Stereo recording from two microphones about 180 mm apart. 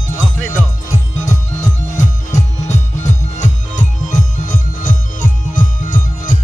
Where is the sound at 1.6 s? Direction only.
40° left (ahead or behind).